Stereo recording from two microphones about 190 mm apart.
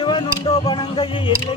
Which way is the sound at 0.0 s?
25° left (ahead or behind).